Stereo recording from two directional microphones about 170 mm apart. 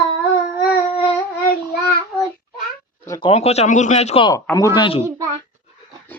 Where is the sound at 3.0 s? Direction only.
20° left (ahead or behind).